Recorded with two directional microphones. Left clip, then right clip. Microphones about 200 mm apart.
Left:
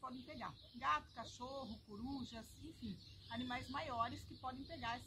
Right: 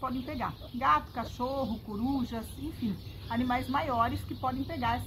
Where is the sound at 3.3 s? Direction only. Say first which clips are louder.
Right 15 dB; 10° left (ahead or behind).